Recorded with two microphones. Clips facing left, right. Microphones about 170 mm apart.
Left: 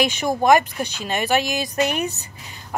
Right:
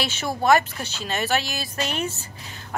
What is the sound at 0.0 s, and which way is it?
Speech, 15° left (ahead or behind).